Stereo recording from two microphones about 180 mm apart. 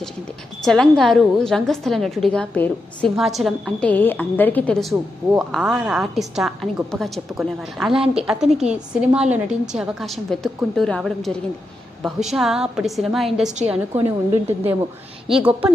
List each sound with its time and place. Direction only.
0.6 s a woman's voice: centre (ahead or behind)
13.9 s a woman's voice: 40° right (ahead or behind)
14.4 s a woman's voice: 10° right (ahead or behind)